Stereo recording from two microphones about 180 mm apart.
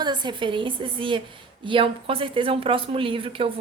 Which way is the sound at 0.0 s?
25° right (ahead or behind).